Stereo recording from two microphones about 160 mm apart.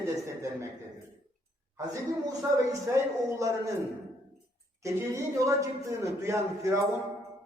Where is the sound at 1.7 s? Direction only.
20° right (ahead or behind).